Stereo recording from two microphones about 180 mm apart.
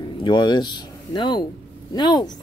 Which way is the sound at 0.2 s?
25° left (ahead or behind).